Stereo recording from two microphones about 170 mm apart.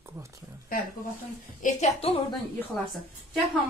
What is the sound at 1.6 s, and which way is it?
Speech, 45° left (ahead or behind).